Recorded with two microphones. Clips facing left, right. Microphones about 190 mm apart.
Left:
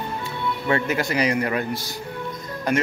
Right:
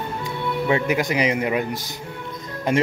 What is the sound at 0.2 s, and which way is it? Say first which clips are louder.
Speech: right 3 dB; 15° right (ahead or behind).